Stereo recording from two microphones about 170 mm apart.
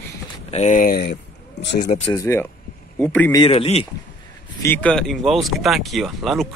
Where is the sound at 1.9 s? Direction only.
35° left (ahead or behind).